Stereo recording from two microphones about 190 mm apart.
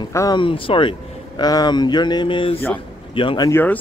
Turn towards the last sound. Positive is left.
turn(degrees=10)  # may be behind; listen again after turning